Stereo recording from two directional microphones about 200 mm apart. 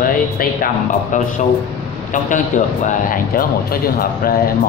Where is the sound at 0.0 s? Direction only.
45° left (ahead or behind).